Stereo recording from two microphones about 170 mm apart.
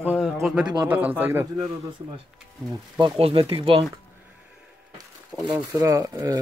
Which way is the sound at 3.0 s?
35° right (ahead or behind).